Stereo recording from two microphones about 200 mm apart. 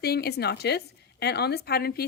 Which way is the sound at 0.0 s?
50° left (ahead or behind).